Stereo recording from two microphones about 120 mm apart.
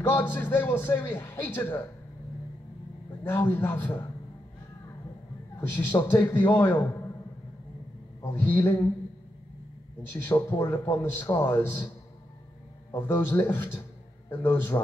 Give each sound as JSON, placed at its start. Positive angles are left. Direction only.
{"t": 0.1, "sound": "a man's voice", "side_deg": 15}
{"t": 3.3, "sound": "a man's voice", "side_deg": 20}
{"t": 5.6, "sound": "a man's voice", "side_deg": 20}
{"t": 8.2, "sound": "a man's voice", "side_deg": 20}
{"t": 10.2, "sound": "a man's voice", "side_deg": 20}
{"t": 12.9, "sound": "a man's voice", "side_deg": 15}